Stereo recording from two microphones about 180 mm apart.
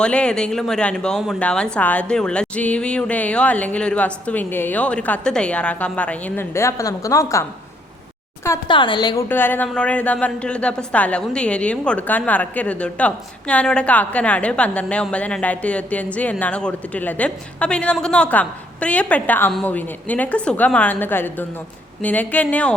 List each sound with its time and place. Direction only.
0.0 s a woman's voice: 5° left (ahead or behind)
8.6 s speech: 25° left (ahead or behind)
9.3 s a woman's voice: 10° left (ahead or behind)